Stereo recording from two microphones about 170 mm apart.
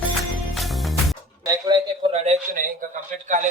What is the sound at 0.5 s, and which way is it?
Music, centre (ahead or behind).